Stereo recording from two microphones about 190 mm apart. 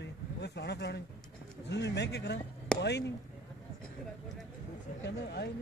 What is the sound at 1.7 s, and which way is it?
Speech, 65° left (ahead or behind).